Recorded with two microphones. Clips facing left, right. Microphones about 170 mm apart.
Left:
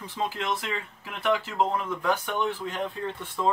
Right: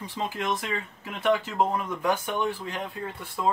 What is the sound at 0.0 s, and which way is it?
Speech, 15° right (ahead or behind).